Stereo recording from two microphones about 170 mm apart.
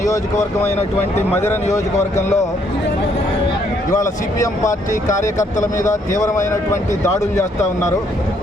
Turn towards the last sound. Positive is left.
turn(degrees=20)  # may be behind; listen again after turning